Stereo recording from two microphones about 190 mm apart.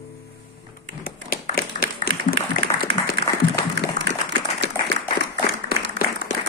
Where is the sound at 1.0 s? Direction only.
50° left (ahead or behind).